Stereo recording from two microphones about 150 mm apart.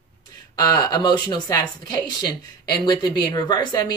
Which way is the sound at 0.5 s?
25° left (ahead or behind).